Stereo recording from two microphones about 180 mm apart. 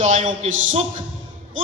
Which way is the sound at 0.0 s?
40° right (ahead or behind).